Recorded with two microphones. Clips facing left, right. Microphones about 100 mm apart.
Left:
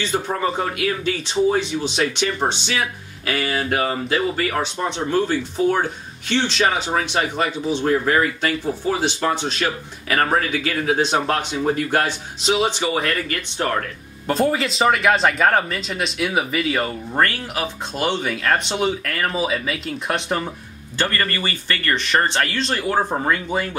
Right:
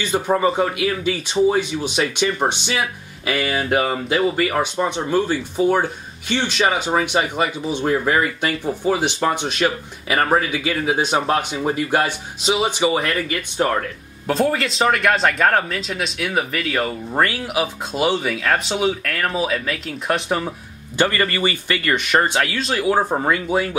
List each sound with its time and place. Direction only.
0.1 s speech: 10° right (ahead or behind)
21.0 s speech: 15° right (ahead or behind)